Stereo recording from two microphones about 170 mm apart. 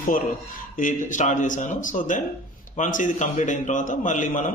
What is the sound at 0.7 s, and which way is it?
A man's voice, 50° left (ahead or behind).